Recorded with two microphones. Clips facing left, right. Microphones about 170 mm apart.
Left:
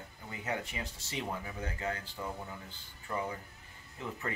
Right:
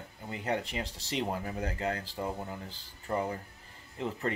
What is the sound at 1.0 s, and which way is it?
Speech, 35° right (ahead or behind).